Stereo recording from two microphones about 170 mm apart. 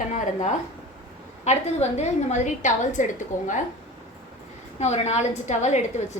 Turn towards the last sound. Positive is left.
turn(degrees=45)  # may be behind; listen again after turning